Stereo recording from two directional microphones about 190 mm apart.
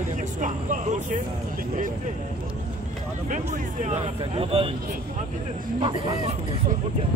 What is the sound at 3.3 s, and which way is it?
Speech, 40° right (ahead or behind).